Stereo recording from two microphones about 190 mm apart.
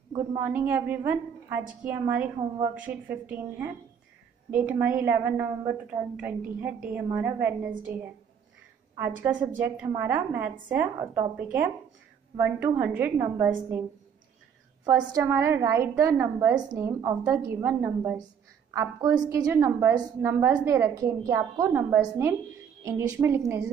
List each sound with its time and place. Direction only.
0.4 s a woman's voice: 10° right (ahead or behind)
14.9 s a woman's voice: 15° right (ahead or behind)